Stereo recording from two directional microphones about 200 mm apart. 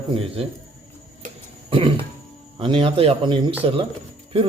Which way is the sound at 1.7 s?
25° right (ahead or behind).